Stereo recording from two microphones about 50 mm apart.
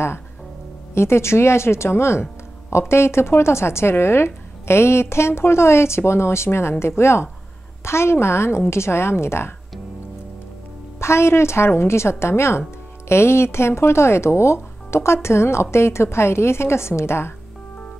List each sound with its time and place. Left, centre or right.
0.9 s a woman's voice: left
11.0 s a woman's voice: left